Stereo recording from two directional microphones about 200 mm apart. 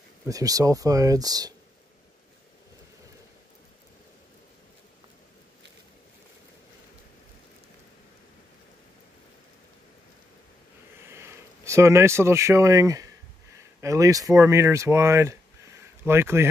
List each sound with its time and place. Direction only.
0.3 s speech: 15° right (ahead or behind)
11.1 s speech: 15° right (ahead or behind)